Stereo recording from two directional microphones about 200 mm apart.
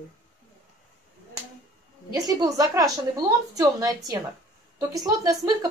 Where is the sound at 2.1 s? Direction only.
20° right (ahead or behind).